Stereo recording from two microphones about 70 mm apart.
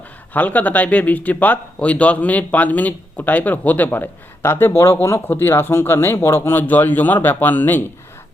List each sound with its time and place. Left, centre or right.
0.3 s speech: left